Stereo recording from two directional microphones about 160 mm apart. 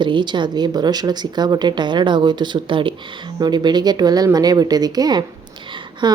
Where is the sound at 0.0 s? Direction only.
30° right (ahead or behind).